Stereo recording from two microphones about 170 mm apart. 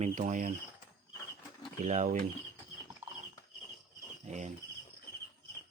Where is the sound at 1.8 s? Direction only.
45° right (ahead or behind).